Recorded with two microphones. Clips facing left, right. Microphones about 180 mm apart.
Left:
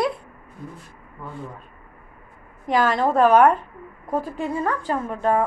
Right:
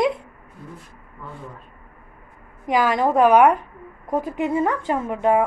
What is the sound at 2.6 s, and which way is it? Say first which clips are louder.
A woman's voice: right 1 dB; 10° right (ahead or behind).